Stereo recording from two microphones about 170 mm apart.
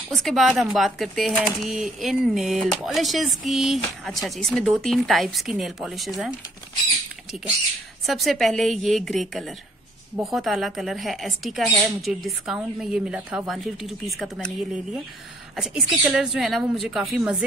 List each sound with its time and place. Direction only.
0.1 s speech: centre (ahead or behind)
8.1 s speech: centre (ahead or behind)